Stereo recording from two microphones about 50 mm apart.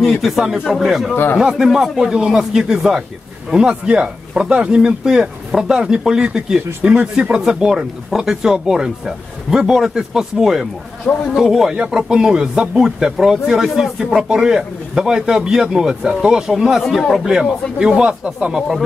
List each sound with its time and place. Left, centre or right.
0.0 s speech: centre
1.1 s a man's voice: left
1.4 s speech: centre